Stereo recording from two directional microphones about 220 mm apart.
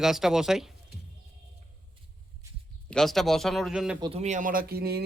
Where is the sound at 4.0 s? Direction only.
30° right (ahead or behind); by 5.0 s 45° right (ahead or behind).